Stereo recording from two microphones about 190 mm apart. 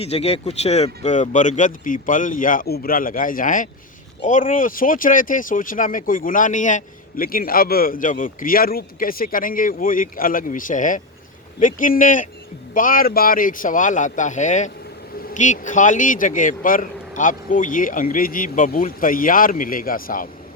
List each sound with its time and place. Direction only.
0.0 s speech: 35° left (ahead or behind); by 20.2 s 50° left (ahead or behind)